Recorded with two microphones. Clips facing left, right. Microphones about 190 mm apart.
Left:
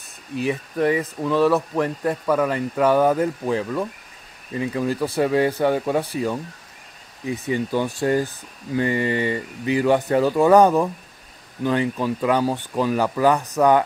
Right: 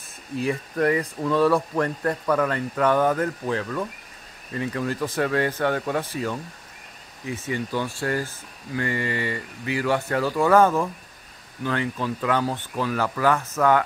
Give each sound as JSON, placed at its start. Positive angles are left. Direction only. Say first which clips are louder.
{"t": 1.0, "sound": "speech", "louder": "left 2 dB", "side_deg": 0}